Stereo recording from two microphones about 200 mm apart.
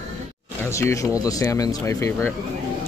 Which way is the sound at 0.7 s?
15° left (ahead or behind).